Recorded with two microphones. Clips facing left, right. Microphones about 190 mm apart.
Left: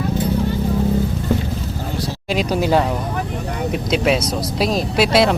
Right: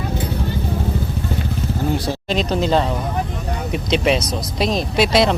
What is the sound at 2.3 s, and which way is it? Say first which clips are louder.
Speech: left 1 dB; 10° left (ahead or behind).